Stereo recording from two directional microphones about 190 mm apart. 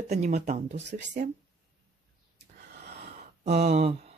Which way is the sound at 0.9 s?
45° right (ahead or behind).